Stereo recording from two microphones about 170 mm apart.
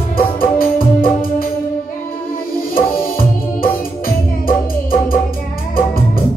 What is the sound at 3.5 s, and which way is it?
Music, 60° left (ahead or behind).